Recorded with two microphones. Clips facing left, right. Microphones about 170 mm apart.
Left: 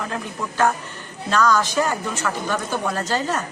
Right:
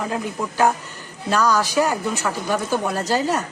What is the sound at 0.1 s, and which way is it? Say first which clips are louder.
A woman's voice: right 3 dB; 15° right (ahead or behind).